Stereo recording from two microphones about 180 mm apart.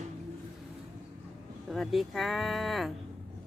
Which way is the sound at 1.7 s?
Centre (ahead or behind).